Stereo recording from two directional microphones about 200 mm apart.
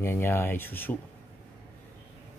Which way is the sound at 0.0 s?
10° left (ahead or behind).